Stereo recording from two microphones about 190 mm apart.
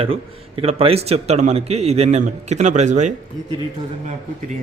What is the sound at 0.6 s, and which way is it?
Speech, 30° right (ahead or behind).